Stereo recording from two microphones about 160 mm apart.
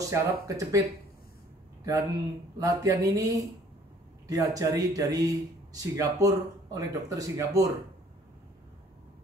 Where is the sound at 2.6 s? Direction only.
20° right (ahead or behind).